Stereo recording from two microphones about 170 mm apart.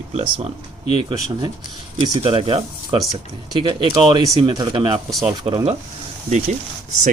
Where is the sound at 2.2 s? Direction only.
30° right (ahead or behind).